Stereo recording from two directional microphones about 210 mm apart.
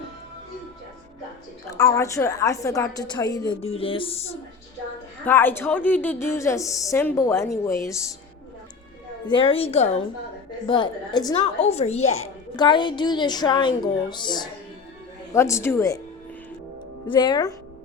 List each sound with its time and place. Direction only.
1.7 s a woman's voice: 15° left (ahead or behind)
5.2 s a woman's voice: 10° left (ahead or behind)
9.2 s a woman's voice: 25° left (ahead or behind)
10.7 s a woman's voice: 20° left (ahead or behind)
11.7 s a woman's voice: 30° left (ahead or behind); by 16.0 s 15° left (ahead or behind)
17.1 s a woman's voice: 20° left (ahead or behind)